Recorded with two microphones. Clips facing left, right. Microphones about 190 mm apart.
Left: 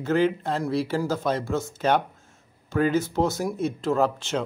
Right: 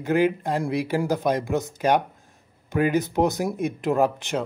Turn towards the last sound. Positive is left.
turn(degrees=-15)  # may be behind; listen again after turning